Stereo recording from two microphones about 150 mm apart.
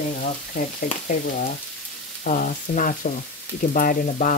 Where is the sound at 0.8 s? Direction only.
70° left (ahead or behind).